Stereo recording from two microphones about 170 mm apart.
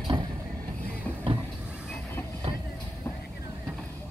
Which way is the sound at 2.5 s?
30° right (ahead or behind).